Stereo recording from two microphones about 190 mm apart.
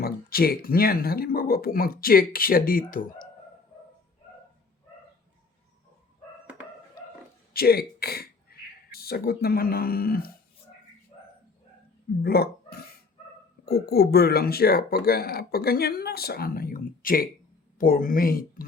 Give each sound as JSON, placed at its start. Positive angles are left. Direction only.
{"t": 0.0, "sound": "speech", "side_deg": 50}
{"t": 7.5, "sound": "speech", "side_deg": 55}
{"t": 12.2, "sound": "speech", "side_deg": 55}